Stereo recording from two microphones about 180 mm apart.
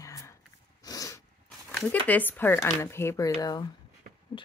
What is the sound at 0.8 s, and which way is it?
Dog, 20° left (ahead or behind).